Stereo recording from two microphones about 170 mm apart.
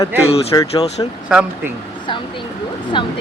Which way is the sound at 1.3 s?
5° right (ahead or behind).